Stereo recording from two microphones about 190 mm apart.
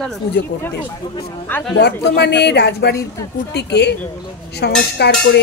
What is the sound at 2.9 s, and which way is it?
Speech, 15° left (ahead or behind).